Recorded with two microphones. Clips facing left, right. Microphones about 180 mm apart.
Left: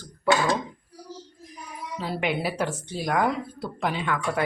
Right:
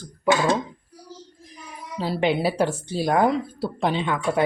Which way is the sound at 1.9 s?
30° right (ahead or behind).